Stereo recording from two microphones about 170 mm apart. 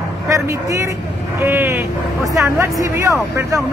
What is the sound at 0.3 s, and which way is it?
A man's voice, 20° right (ahead or behind).